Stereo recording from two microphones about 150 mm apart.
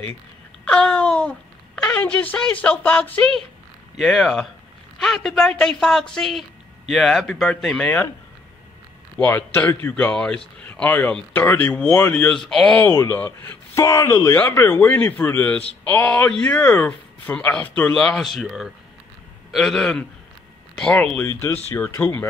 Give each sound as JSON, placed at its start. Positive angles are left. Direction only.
{"t": 0.7, "sound": "speech", "side_deg": 5}
{"t": 9.1, "sound": "speech", "side_deg": 15}
{"t": 12.9, "sound": "speech", "side_deg": 20}